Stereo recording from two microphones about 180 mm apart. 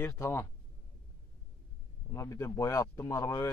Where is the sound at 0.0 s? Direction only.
15° left (ahead or behind).